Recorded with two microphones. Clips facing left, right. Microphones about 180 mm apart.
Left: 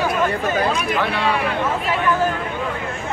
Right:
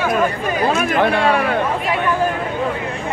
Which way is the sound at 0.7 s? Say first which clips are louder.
Right 5 dB; 50° right (ahead or behind).